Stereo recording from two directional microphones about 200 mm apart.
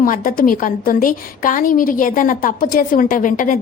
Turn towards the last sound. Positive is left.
turn(degrees=40)  # may be behind; listen again after turning